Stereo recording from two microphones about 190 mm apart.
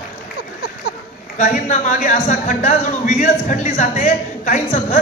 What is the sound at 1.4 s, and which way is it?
A man's voice, 40° left (ahead or behind).